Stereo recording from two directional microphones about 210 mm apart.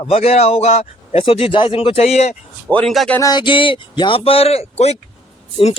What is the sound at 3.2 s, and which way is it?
A man's voice, 20° left (ahead or behind).